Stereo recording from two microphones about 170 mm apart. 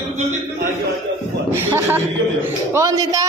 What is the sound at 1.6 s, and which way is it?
Speech, 10° right (ahead or behind).